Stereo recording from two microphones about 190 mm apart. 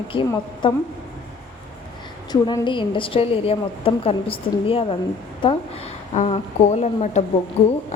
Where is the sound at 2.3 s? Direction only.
25° left (ahead or behind).